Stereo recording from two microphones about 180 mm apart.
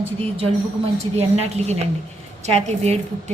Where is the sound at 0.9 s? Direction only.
35° right (ahead or behind).